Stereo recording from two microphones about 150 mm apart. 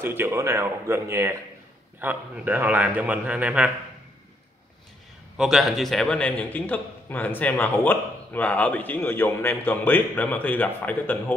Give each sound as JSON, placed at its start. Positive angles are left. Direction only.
{"t": 0.0, "sound": "a man's voice", "side_deg": -15}
{"t": 5.4, "sound": "a man's voice", "side_deg": 0}